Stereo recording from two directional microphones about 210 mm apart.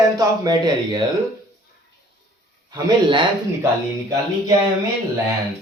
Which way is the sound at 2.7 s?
20° right (ahead or behind).